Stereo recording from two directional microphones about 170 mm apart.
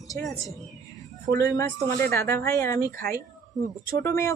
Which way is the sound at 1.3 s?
20° left (ahead or behind).